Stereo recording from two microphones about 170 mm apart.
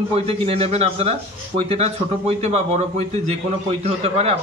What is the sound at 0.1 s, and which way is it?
A man's voice, 35° right (ahead or behind).